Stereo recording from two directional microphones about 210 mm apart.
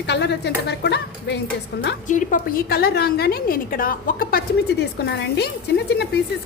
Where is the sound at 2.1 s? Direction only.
40° left (ahead or behind).